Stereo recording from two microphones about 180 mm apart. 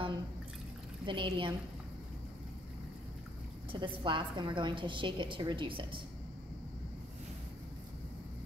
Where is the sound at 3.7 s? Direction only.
25° right (ahead or behind).